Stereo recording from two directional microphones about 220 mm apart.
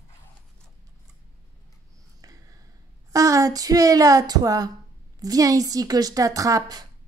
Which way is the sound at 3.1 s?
15° right (ahead or behind).